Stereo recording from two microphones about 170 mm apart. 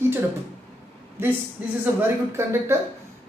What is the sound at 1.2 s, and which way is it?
A woman's voice, 15° right (ahead or behind).